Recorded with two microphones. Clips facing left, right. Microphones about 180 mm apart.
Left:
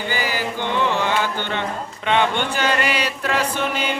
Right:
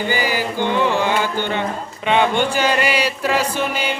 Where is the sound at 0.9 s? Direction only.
10° right (ahead or behind).